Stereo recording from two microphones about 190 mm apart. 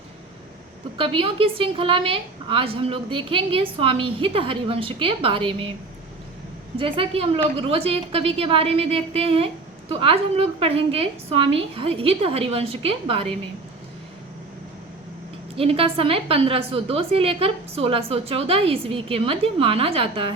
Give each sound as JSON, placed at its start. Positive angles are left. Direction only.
{"t": 0.9, "sound": "a woman's voice", "side_deg": -30}
{"t": 6.7, "sound": "a woman's voice", "side_deg": -30}
{"t": 15.5, "sound": "a woman's voice", "side_deg": -30}